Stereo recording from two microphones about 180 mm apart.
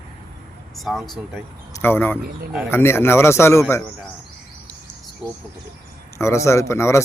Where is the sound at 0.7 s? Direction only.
Centre (ahead or behind).